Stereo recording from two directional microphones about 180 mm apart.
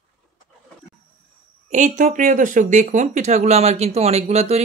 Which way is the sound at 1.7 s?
45° right (ahead or behind).